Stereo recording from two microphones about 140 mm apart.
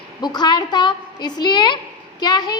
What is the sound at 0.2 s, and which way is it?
A woman's voice, 30° left (ahead or behind).